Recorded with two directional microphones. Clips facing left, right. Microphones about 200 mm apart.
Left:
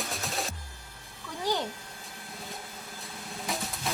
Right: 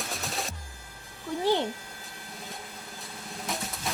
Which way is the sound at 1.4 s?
25° right (ahead or behind).